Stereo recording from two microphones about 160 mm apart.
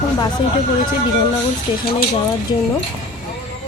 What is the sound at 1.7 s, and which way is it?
Speech, 30° left (ahead or behind).